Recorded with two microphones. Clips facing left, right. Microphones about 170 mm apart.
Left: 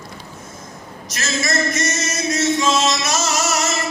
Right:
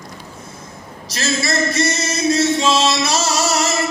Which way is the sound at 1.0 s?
30° right (ahead or behind).